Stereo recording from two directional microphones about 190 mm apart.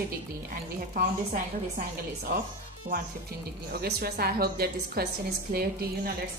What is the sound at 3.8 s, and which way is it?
A woman's voice, 55° right (ahead or behind).